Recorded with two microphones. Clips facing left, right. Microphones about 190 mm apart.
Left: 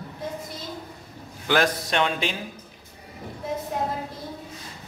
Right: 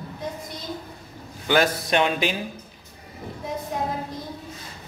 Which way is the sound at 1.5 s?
Centre (ahead or behind).